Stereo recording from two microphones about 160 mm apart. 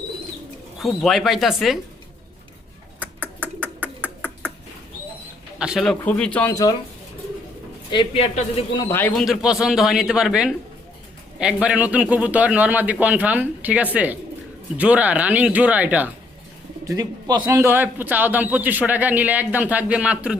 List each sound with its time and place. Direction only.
0.8 s a man's voice: centre (ahead or behind)
3.0 s a sound: 10° right (ahead or behind)
5.5 s a man's voice: 5° right (ahead or behind)
6.5 s speech: 25° left (ahead or behind)
7.9 s speech: 35° left (ahead or behind)
8.7 s speech: 25° left (ahead or behind)
9.0 s speech: 10° left (ahead or behind)
9.2 s a man's voice: centre (ahead or behind)
16.8 s speech: 20° right (ahead or behind); by 20.3 s 5° right (ahead or behind)